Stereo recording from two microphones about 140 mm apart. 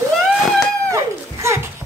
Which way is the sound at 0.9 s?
20° right (ahead or behind).